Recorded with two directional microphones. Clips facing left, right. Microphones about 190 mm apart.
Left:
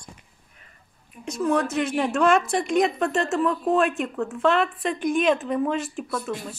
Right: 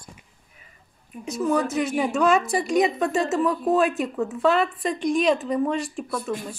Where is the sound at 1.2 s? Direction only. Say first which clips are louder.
Even; centre (ahead or behind).